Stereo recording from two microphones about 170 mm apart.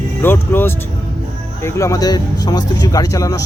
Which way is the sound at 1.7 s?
20° left (ahead or behind).